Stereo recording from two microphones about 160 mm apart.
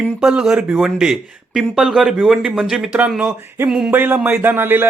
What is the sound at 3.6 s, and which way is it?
Music, 5° right (ahead or behind).